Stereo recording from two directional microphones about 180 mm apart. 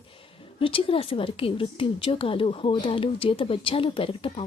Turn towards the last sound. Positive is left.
turn(degrees=30)  # may be behind; listen again after turning